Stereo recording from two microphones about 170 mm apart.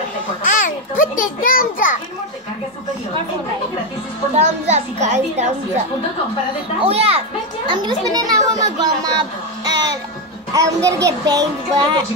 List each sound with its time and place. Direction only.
0.5 s a child's voice: 50° left (ahead or behind)
4.4 s a child's voice: 40° right (ahead or behind)
6.8 s a child's voice: 35° right (ahead or behind)
7.7 s child singing: 25° right (ahead or behind)
9.7 s music: 25° right (ahead or behind)
10.5 s child singing: 20° right (ahead or behind)